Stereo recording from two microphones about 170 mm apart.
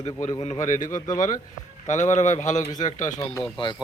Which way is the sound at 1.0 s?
20° left (ahead or behind).